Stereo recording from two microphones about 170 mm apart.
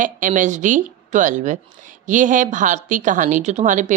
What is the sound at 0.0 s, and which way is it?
Speech, 50° right (ahead or behind).